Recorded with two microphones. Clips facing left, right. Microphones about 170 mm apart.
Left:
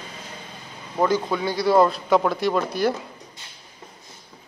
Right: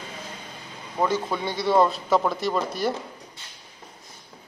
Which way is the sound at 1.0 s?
Centre (ahead or behind).